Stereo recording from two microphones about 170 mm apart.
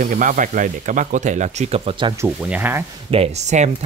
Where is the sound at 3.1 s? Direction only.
40° right (ahead or behind).